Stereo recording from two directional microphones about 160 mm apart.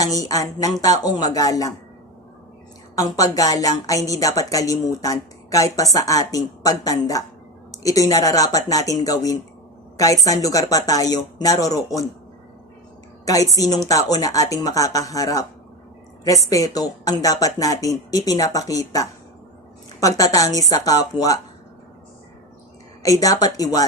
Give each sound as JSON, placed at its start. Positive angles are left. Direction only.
{"t": 0.0, "sound": "speech", "side_deg": 20}
{"t": 2.9, "sound": "speech", "side_deg": 20}
{"t": 13.2, "sound": "speech", "side_deg": 20}
{"t": 16.5, "sound": "speech", "side_deg": 20}
{"t": 23.0, "sound": "speech", "side_deg": 20}